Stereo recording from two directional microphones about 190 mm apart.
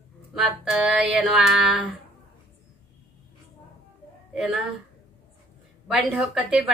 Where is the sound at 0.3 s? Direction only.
5° right (ahead or behind).